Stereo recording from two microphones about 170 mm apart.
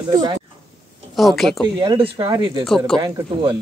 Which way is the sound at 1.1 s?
Centre (ahead or behind).